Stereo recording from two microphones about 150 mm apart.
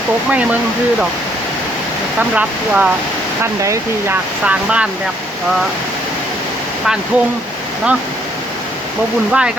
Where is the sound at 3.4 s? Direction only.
20° right (ahead or behind).